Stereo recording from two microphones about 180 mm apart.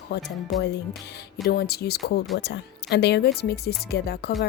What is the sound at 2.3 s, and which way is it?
Speech, 75° left (ahead or behind).